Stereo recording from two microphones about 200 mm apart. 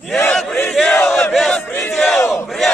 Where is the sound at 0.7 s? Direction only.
5° left (ahead or behind).